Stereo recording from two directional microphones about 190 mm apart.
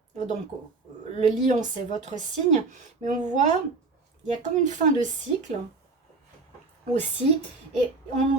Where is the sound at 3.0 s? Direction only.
40° right (ahead or behind).